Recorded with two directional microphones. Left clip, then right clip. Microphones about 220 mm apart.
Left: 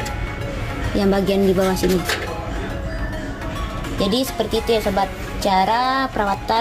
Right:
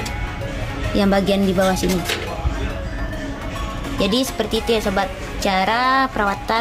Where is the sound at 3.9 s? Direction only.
15° right (ahead or behind).